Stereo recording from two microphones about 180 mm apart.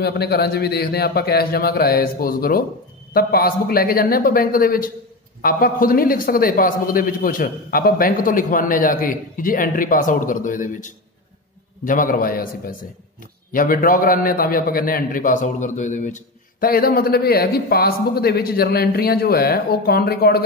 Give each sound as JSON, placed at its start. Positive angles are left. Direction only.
{"t": 0.0, "sound": "a man's voice", "side_deg": 60}